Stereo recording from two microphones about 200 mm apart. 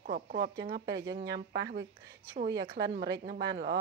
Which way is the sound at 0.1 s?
50° right (ahead or behind).